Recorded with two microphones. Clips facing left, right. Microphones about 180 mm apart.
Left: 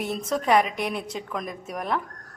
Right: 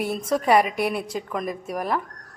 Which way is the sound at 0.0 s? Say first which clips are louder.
Right 3 dB; 10° right (ahead or behind).